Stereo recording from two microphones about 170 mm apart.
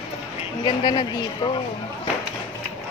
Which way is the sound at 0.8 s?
25° left (ahead or behind).